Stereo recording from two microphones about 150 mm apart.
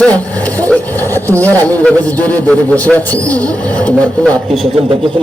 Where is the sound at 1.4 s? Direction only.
10° left (ahead or behind).